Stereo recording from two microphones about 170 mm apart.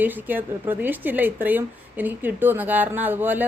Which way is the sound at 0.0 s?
10° right (ahead or behind).